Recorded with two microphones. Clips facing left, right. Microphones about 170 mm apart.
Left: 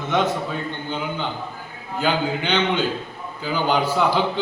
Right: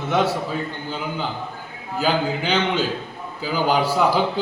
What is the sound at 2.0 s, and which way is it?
Speech, 5° right (ahead or behind).